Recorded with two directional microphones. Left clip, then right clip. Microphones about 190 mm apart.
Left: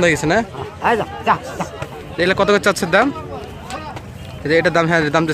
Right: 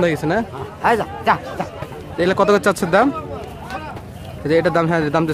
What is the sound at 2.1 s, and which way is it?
Speech, 20° right (ahead or behind).